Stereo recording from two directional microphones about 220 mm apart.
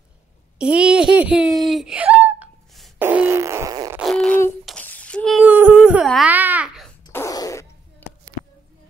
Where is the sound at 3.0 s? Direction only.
10° right (ahead or behind).